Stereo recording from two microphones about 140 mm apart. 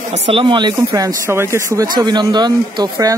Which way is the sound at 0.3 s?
35° right (ahead or behind).